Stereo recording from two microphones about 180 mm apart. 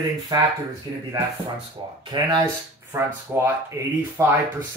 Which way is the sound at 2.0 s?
25° right (ahead or behind).